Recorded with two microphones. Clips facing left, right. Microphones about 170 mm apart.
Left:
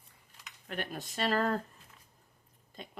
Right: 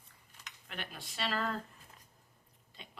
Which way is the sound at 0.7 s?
45° left (ahead or behind).